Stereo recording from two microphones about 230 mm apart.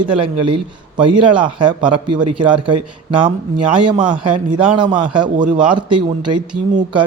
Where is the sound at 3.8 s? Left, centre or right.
Right.